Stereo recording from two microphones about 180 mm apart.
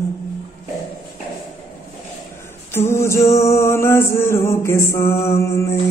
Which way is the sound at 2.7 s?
15° left (ahead or behind).